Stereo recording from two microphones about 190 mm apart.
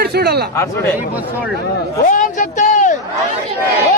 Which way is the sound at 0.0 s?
55° right (ahead or behind).